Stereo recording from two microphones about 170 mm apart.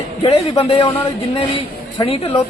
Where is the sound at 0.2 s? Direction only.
35° left (ahead or behind).